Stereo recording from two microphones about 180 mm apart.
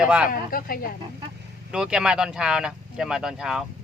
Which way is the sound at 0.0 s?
5° right (ahead or behind).